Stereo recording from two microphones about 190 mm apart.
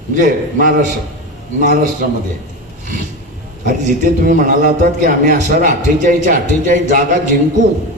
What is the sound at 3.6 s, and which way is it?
A man's voice, 45° right (ahead or behind).